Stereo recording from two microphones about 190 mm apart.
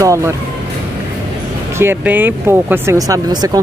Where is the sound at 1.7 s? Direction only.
10° right (ahead or behind).